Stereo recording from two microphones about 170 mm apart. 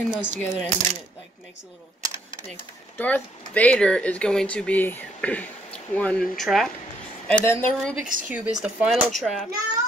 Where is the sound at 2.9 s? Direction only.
10° left (ahead or behind).